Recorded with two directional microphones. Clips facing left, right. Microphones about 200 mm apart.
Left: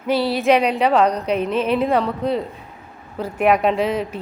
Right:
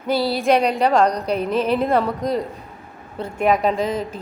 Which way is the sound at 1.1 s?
35° right (ahead or behind).